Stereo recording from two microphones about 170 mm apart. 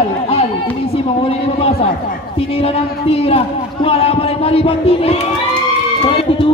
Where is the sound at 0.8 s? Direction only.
35° left (ahead or behind).